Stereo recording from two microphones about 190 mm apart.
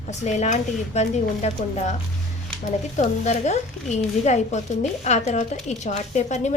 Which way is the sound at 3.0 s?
35° left (ahead or behind).